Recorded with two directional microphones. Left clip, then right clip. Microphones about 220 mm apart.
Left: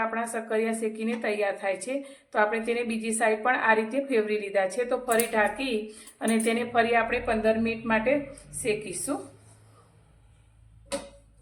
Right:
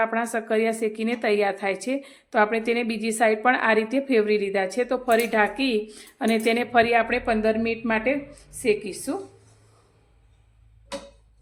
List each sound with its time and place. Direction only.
0.0 s a woman's voice: 50° right (ahead or behind)